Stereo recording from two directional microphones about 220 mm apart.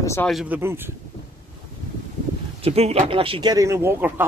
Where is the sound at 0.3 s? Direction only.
5° right (ahead or behind).